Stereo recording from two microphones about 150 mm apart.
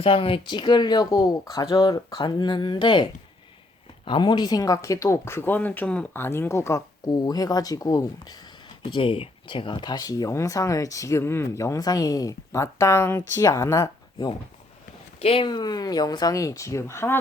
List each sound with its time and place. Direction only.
0.0 s speech: 35° left (ahead or behind)
15.2 s speech: 35° left (ahead or behind); by 17.2 s 15° left (ahead or behind)